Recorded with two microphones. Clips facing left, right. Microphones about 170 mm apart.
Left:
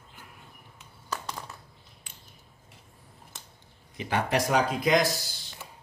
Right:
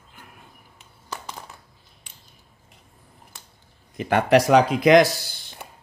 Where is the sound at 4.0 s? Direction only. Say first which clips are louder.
Right 9 dB; 60° right (ahead or behind); by 5.3 s 75° right (ahead or behind).